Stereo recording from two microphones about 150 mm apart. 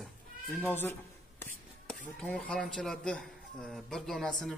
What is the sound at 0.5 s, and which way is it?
Speech, 15° left (ahead or behind).